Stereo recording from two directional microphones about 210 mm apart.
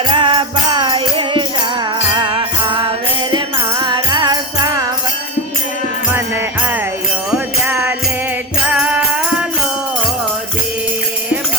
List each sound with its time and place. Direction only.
0.1 s music: 20° right (ahead or behind)
7.3 s music: 10° right (ahead or behind)